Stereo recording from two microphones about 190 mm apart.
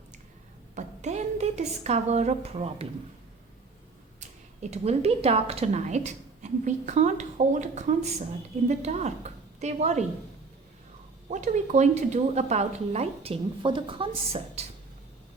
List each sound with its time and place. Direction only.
0.8 s speech: 35° right (ahead or behind)
4.2 s a woman's voice: 35° right (ahead or behind)
11.3 s speech: 40° right (ahead or behind)
14.6 s a sound: 35° right (ahead or behind)